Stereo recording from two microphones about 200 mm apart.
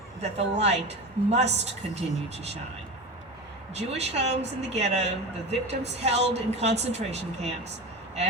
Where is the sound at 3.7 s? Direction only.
30° right (ahead or behind).